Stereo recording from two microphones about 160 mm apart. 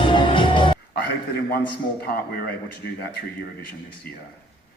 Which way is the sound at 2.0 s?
75° left (ahead or behind).